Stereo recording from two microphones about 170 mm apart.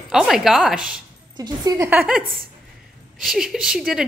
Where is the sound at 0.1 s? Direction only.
Centre (ahead or behind).